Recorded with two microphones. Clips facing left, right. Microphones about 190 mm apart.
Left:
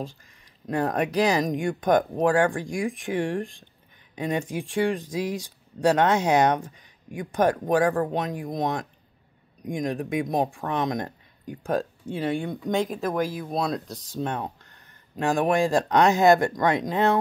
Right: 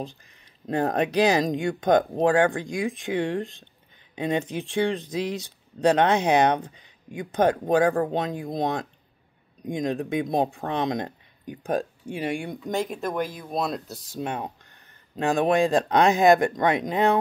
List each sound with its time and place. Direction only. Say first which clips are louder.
0.7 s speech: right 1 dB; 25° right (ahead or behind); by 14.5 s 10° right (ahead or behind)
15.1 s speech: right 1 dB; 20° right (ahead or behind)